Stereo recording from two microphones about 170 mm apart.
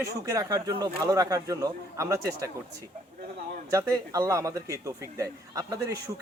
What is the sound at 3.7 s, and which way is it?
A man's voice, 20° right (ahead or behind).